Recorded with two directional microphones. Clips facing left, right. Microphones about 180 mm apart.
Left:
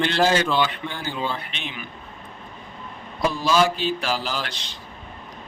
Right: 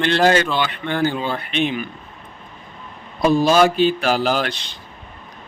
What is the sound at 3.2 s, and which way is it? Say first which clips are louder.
A man's voice: right 6 dB; 55° right (ahead or behind).